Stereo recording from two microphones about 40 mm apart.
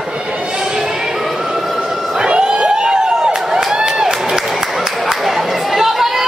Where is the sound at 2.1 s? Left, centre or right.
Right.